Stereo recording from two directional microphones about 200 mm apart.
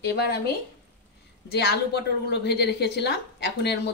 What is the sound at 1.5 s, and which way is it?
A woman's voice, 55° left (ahead or behind).